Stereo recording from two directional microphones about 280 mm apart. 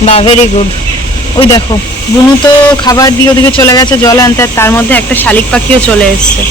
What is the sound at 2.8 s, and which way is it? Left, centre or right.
Speech, centre.